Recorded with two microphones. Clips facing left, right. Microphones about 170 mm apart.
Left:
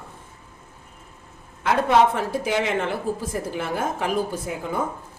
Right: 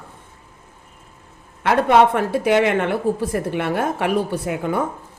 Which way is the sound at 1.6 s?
65° right (ahead or behind).